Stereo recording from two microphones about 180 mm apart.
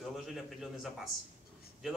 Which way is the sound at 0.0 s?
Centre (ahead or behind).